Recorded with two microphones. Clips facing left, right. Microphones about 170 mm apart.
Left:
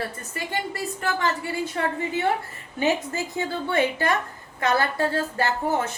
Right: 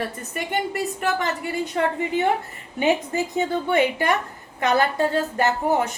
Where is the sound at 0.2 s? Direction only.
20° right (ahead or behind).